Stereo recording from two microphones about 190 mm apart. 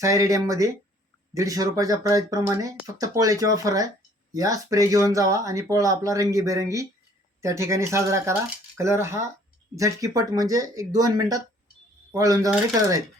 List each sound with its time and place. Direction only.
0.0 s speech: 15° right (ahead or behind)